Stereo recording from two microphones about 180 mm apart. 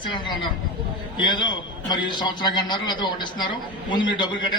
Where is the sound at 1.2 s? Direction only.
25° left (ahead or behind).